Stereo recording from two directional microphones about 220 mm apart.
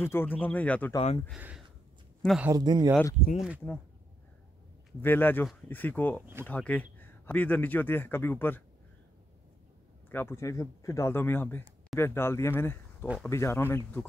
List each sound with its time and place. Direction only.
0.0 s speech: 10° left (ahead or behind)
0.9 s speech: 25° left (ahead or behind)
2.2 s speech: 5° right (ahead or behind)
2.5 s speech: 20° right (ahead or behind)
3.3 s speech: 5° right (ahead or behind)
5.0 s speech: 10° left (ahead or behind)
10.0 s speech: 10° left (ahead or behind)